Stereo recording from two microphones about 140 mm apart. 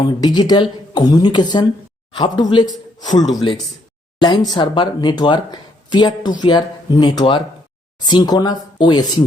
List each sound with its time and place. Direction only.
0.2 s speech: 30° left (ahead or behind)